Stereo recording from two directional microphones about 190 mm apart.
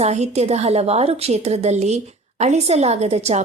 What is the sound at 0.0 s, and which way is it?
Speech, 35° right (ahead or behind).